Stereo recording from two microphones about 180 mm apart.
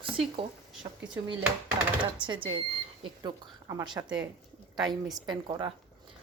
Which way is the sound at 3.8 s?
25° right (ahead or behind).